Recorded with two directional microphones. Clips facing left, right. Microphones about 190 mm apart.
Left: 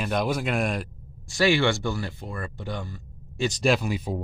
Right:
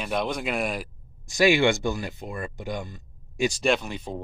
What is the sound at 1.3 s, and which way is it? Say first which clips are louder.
Speech: right 2 dB; 15° right (ahead or behind).